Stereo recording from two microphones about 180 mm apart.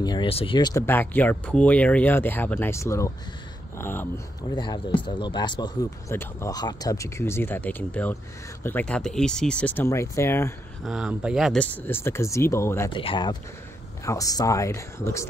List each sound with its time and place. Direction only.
0.0 s speech: 25° left (ahead or behind)
0.8 s speech: 10° left (ahead or behind)
10.8 s speech: 5° right (ahead or behind); by 12.9 s 15° left (ahead or behind)
12.9 s speech: 25° left (ahead or behind)